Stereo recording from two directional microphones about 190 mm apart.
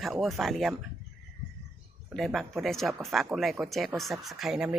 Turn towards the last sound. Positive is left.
turn(degrees=-5)  # may be behind; listen again after turning